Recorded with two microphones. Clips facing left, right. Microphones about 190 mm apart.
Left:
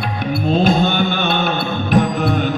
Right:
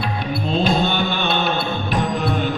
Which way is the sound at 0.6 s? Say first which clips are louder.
Left 2 dB; 50° left (ahead or behind).